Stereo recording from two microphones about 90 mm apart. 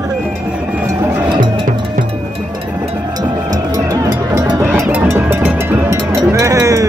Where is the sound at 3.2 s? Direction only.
40° right (ahead or behind).